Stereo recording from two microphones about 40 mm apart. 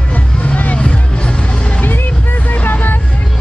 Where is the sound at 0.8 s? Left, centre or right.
Left.